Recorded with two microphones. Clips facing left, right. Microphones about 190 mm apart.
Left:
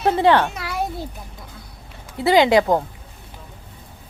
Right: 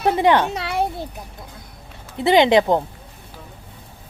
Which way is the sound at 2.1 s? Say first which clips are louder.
Right 1 dB; 20° right (ahead or behind).